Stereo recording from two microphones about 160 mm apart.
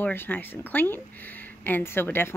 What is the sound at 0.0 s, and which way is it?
Speech, 15° left (ahead or behind).